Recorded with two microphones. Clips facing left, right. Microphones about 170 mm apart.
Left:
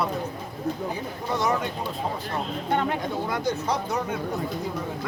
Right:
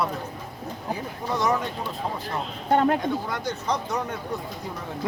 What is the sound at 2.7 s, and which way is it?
Speech, 40° right (ahead or behind).